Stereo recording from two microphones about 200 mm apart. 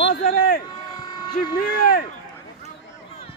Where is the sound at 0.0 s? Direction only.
50° left (ahead or behind).